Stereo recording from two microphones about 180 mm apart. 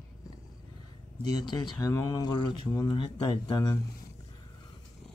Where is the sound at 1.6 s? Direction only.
20° left (ahead or behind).